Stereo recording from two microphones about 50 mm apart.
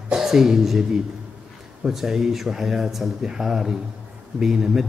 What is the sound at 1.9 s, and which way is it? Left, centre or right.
Speech, centre.